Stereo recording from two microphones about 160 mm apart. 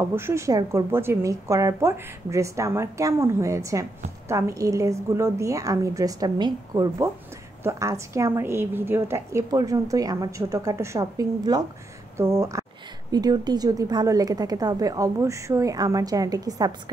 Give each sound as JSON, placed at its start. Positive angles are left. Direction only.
{"t": 0.0, "sound": "a woman's voice", "side_deg": -15}